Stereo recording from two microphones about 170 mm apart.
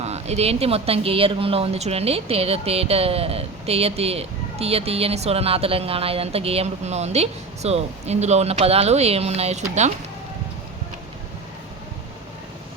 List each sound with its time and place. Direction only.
0.0 s speech: 40° right (ahead or behind)